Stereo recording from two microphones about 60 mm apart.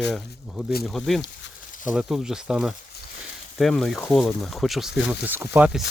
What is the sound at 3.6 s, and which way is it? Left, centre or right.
Speech, centre.